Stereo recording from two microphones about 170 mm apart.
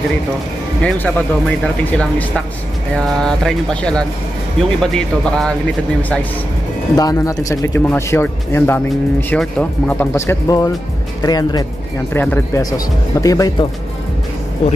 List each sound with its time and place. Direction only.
0.8 s speech: 10° left (ahead or behind)
7.0 s speech: 20° left (ahead or behind)
12.1 s speech: 10° left (ahead or behind)